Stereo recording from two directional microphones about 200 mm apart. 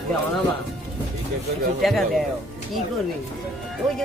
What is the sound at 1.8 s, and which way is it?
Speech, centre (ahead or behind).